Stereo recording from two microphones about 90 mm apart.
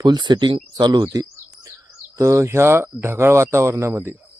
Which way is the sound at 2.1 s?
35° right (ahead or behind).